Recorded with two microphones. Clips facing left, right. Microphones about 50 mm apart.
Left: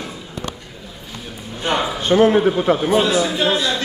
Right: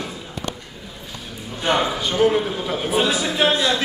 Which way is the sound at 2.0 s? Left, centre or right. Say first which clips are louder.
Left 5 dB; left.